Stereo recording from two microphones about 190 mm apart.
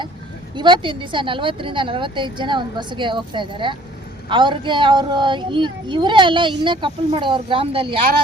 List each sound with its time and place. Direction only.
0.5 s speech: 25° right (ahead or behind)